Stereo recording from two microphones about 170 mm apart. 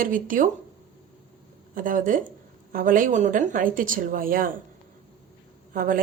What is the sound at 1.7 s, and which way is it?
Speech, 55° right (ahead or behind).